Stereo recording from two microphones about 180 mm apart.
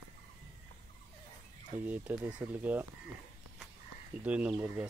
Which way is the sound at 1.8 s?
10° right (ahead or behind).